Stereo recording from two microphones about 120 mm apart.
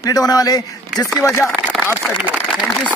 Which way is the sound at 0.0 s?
30° left (ahead or behind).